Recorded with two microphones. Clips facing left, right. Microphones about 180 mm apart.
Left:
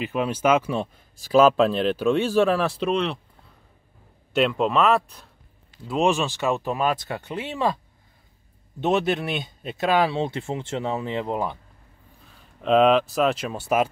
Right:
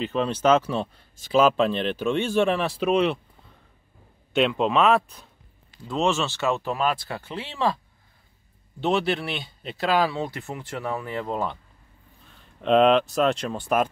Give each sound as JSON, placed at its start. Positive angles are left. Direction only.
{"t": 0.0, "sound": "speech", "side_deg": 10}
{"t": 4.3, "sound": "speech", "side_deg": 0}
{"t": 5.9, "sound": "speech", "side_deg": 15}
{"t": 8.8, "sound": "speech", "side_deg": 20}
{"t": 12.3, "sound": "speech", "side_deg": 0}